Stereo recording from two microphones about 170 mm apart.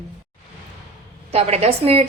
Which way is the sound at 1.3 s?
40° right (ahead or behind).